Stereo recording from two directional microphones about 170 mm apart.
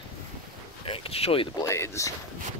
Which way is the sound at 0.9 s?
35° left (ahead or behind).